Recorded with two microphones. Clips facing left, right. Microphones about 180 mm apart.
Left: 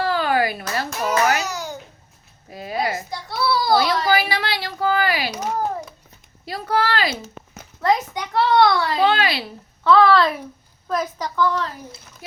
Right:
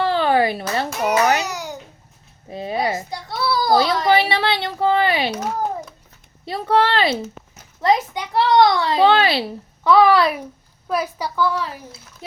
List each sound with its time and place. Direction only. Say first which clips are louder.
0.0 s babbling: right 3 dB; 25° right (ahead or behind)
2.5 s a child's voice: right 2 dB; 25° right (ahead or behind)
3.7 s a sound: right 3 dB; 30° right (ahead or behind)
5.3 s typing: right 1 dB; 5° right (ahead or behind)
6.4 s a child's voice: right 4 dB; 25° right (ahead or behind)
8.3 s a child's voice: right 1 dB; 20° right (ahead or behind)
9.8 s a woman's voice: right 1 dB; 15° right (ahead or behind)